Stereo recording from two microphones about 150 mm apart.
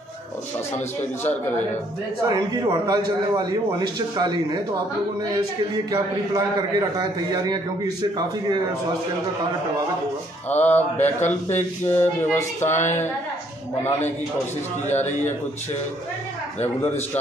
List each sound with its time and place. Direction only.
2.2 s a man's voice: 25° right (ahead or behind)
5.9 s a man's voice: 25° right (ahead or behind)
10.5 s speech: 10° left (ahead or behind)
11.0 s a man's voice: 50° left (ahead or behind)
12.3 s speech: 15° left (ahead or behind)
14.9 s a man's voice: 50° left (ahead or behind)